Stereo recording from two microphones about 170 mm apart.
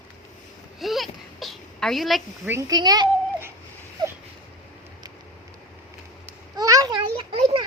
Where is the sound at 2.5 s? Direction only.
20° right (ahead or behind).